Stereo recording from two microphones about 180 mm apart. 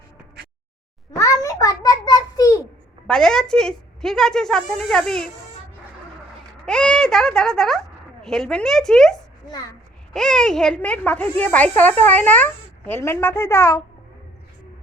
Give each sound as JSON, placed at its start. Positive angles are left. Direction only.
{"t": 1.1, "sound": "a sound", "side_deg": 20}
{"t": 3.1, "sound": "a woman's voice", "side_deg": 5}
{"t": 6.7, "sound": "a woman's voice", "side_deg": 5}